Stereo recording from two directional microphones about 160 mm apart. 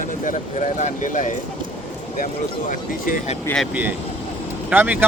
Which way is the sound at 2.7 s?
60° left (ahead or behind).